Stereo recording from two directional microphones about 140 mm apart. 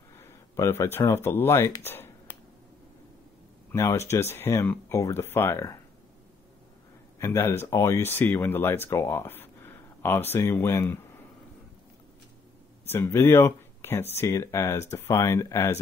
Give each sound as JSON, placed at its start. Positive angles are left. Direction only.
{"t": 0.6, "sound": "speech", "side_deg": 20}
{"t": 1.9, "sound": "a sound", "side_deg": 15}
{"t": 3.7, "sound": "speech", "side_deg": 20}
{"t": 7.2, "sound": "speech", "side_deg": 20}
{"t": 12.8, "sound": "speech", "side_deg": 15}